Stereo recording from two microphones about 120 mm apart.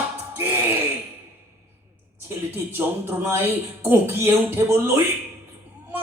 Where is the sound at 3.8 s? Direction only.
20° right (ahead or behind).